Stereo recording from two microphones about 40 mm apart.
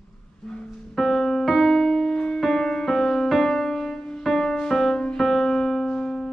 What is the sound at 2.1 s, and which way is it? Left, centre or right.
Music, centre.